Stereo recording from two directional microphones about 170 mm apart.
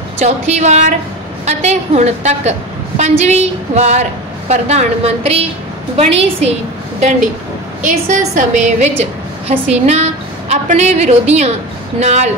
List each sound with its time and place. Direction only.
0.2 s a woman's voice: 40° right (ahead or behind)
7.8 s a woman's voice: 50° right (ahead or behind)